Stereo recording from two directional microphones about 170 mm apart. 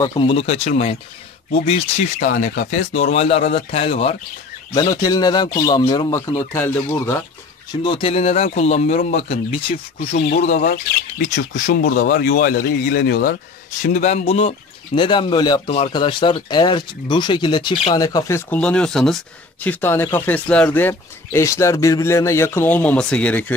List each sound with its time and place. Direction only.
0.0 s speech: 30° left (ahead or behind)
2.1 s speech: 55° left (ahead or behind)
2.9 s speech: 35° left (ahead or behind)
4.7 s speech: 20° left (ahead or behind)
7.8 s speech: 30° left (ahead or behind)
10.4 s speech: 50° left (ahead or behind); by 13.4 s 65° left (ahead or behind)
13.8 s speech: 45° left (ahead or behind); by 15.6 s 25° left (ahead or behind)
15.6 s speech: 40° left (ahead or behind)
15.9 s speech: 25° left (ahead or behind)
18.5 s speech: 5° left (ahead or behind)